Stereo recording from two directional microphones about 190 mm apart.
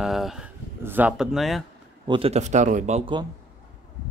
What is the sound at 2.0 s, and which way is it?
Speech, 30° right (ahead or behind).